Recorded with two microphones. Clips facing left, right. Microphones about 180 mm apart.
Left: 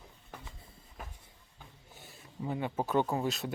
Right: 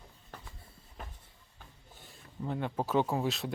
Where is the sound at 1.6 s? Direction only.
10° left (ahead or behind).